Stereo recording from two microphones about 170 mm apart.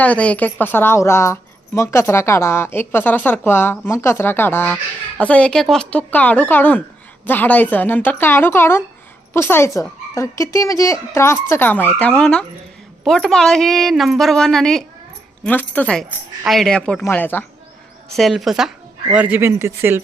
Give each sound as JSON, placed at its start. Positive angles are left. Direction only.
{"t": 0.0, "sound": "a woman's voice", "side_deg": 10}
{"t": 18.2, "sound": "speech", "side_deg": 0}